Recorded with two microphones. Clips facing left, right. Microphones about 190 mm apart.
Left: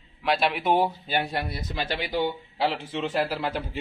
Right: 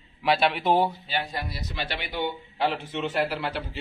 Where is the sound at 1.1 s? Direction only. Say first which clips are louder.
Left 3 dB; 60° left (ahead or behind); by 3.7 s 40° left (ahead or behind).